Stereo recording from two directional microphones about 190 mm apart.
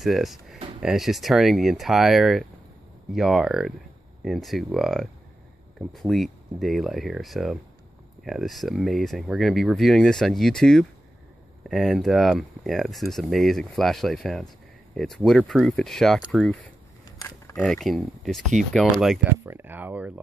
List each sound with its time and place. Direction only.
0.0 s speech: centre (ahead or behind)
17.2 s keys jangling: 20° left (ahead or behind)
17.6 s speech: 5° left (ahead or behind)